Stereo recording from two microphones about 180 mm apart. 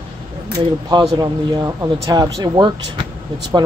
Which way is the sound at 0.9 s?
25° right (ahead or behind).